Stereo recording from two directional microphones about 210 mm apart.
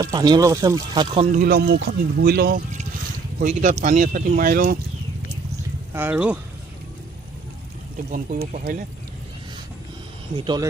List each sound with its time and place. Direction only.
0.0 s speech: 20° right (ahead or behind)
1.4 s speech: 45° right (ahead or behind)
5.9 s speech: 5° right (ahead or behind)
8.1 s speech: 45° right (ahead or behind)
10.3 s speech: 20° right (ahead or behind)